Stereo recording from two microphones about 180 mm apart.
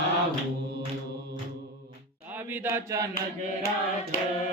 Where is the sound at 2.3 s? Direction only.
10° right (ahead or behind).